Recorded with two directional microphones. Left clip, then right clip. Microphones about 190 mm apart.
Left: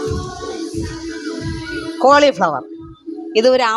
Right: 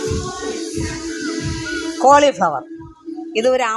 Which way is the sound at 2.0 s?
35° left (ahead or behind).